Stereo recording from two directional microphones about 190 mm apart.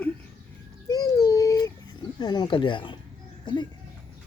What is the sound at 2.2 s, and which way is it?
Speech, 20° left (ahead or behind).